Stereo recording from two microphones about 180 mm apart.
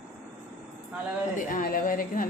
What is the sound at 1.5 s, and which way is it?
Speech, 50° left (ahead or behind).